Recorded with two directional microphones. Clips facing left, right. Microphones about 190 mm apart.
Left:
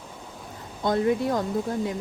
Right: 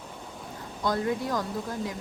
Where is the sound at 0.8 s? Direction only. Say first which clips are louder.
Left 5 dB; 25° left (ahead or behind).